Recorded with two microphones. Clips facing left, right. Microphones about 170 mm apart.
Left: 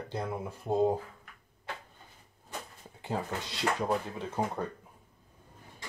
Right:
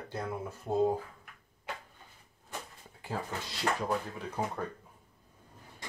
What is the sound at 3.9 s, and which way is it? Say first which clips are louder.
Speech: left 2 dB; 20° left (ahead or behind).